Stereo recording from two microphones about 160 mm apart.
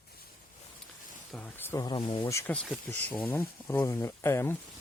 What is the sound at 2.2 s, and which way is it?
Speech, 15° left (ahead or behind).